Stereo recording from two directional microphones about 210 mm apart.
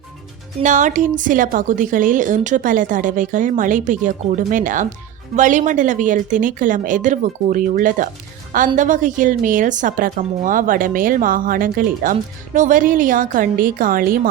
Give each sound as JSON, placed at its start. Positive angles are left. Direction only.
{"t": 0.6, "sound": "a woman's voice", "side_deg": -35}